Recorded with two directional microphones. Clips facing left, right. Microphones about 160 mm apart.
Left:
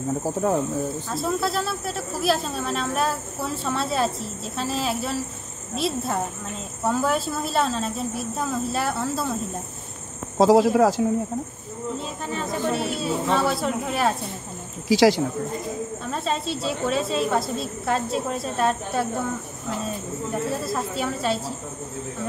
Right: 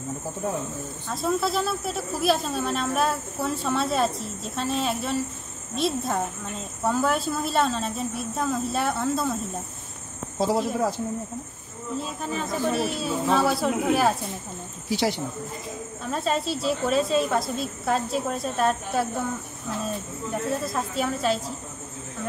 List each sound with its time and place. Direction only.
1.1 s speech: centre (ahead or behind)
10.3 s speech: 90° left
12.0 s speech: centre (ahead or behind)
14.9 s speech: 90° left
16.1 s speech: centre (ahead or behind)
20.4 s speech: centre (ahead or behind)